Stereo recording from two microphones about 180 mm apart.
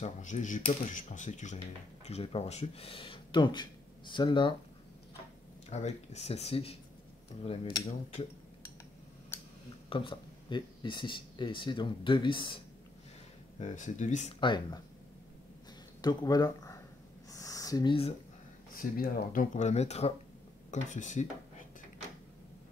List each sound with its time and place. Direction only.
0.0 s speech: 45° left (ahead or behind); by 4.6 s 25° left (ahead or behind)
5.7 s speech: 40° left (ahead or behind)
9.8 s speech: 25° left (ahead or behind)
13.6 s speech: 45° left (ahead or behind)
14.4 s speech: 25° left (ahead or behind)
16.0 s speech: 20° left (ahead or behind)
17.3 s a sound: 20° left (ahead or behind)
18.7 s speech: 55° left (ahead or behind)